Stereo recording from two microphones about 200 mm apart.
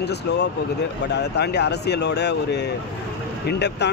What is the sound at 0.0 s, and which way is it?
A man's voice, 55° left (ahead or behind).